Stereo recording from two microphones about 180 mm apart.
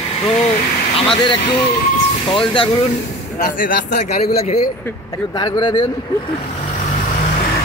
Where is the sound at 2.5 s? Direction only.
30° left (ahead or behind).